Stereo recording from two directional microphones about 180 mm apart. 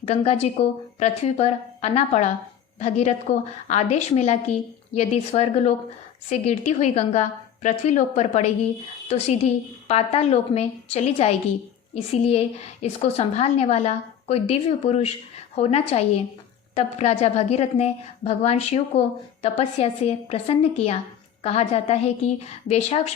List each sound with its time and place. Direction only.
0.0 s a woman's voice: 35° left (ahead or behind)